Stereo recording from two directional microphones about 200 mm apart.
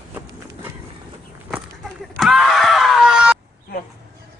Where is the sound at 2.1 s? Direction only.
Centre (ahead or behind).